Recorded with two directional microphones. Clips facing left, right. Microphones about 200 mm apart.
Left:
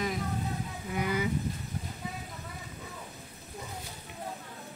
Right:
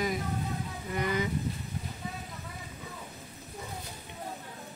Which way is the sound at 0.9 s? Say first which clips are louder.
Even; 10° left (ahead or behind).